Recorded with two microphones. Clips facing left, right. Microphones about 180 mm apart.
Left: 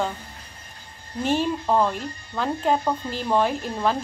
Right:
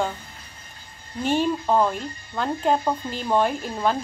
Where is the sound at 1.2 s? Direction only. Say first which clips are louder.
Right 1 dB; centre (ahead or behind).